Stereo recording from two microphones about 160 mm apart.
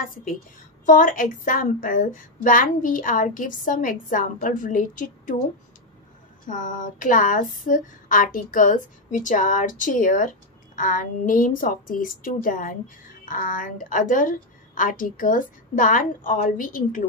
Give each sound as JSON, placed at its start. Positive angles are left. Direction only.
{"t": 0.0, "sound": "a woman's voice", "side_deg": 60}
{"t": 6.4, "sound": "a woman's voice", "side_deg": 55}